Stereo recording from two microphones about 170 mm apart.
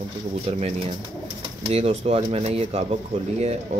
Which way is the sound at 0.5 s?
35° right (ahead or behind).